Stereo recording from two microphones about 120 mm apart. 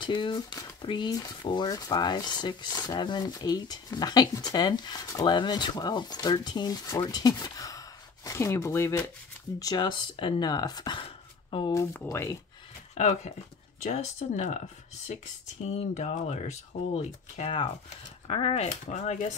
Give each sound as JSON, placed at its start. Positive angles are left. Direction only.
{"t": 0.0, "sound": "speech", "side_deg": 40}
{"t": 11.5, "sound": "speech", "side_deg": 45}
{"t": 11.9, "sound": "speech", "side_deg": 20}
{"t": 12.9, "sound": "speech", "side_deg": 65}
{"t": 15.9, "sound": "speech", "side_deg": 65}